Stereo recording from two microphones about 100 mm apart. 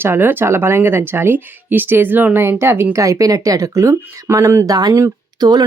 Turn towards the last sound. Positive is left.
turn(degrees=-45)  # may be behind; listen again after turning